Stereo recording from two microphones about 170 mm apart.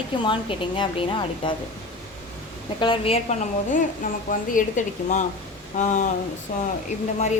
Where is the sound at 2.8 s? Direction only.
35° left (ahead or behind).